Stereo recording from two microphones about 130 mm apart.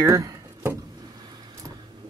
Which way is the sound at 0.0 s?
25° right (ahead or behind).